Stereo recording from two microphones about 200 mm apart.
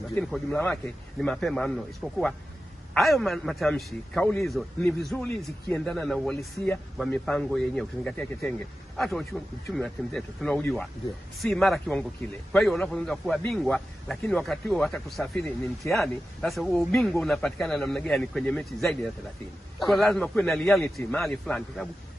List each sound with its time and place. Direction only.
0.1 s a man's voice: centre (ahead or behind)